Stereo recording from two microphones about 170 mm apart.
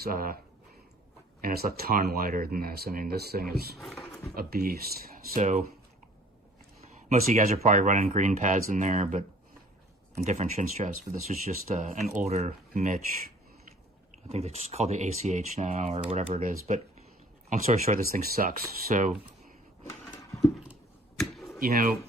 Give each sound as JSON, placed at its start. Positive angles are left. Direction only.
{"t": 0.0, "sound": "speech", "side_deg": -55}
{"t": 1.4, "sound": "speech", "side_deg": -60}
{"t": 7.1, "sound": "speech", "side_deg": -45}
{"t": 14.3, "sound": "speech", "side_deg": -35}
{"t": 21.2, "sound": "a sound", "side_deg": 0}
{"t": 21.6, "sound": "speech", "side_deg": -55}